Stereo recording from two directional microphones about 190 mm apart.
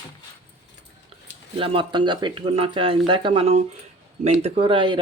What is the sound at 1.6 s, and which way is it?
Speech, 25° right (ahead or behind).